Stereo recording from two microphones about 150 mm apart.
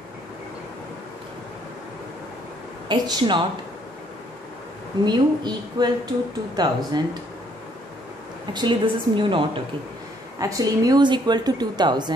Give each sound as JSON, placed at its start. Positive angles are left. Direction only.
{"t": 2.9, "sound": "a woman's voice", "side_deg": -30}
{"t": 5.0, "sound": "a woman's voice", "side_deg": -30}
{"t": 8.5, "sound": "a woman's voice", "side_deg": -30}
{"t": 10.4, "sound": "a woman's voice", "side_deg": -25}